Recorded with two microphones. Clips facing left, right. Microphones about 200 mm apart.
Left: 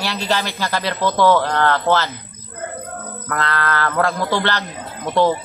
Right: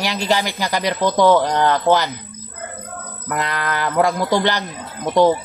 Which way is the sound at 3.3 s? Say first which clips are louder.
Left 1 dB; 15° right (ahead or behind).